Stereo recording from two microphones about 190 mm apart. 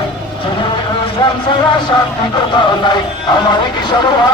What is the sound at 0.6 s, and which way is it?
Vehicle, 25° left (ahead or behind).